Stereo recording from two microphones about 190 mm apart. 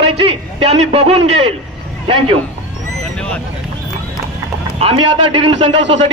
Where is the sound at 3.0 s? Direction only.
5° left (ahead or behind).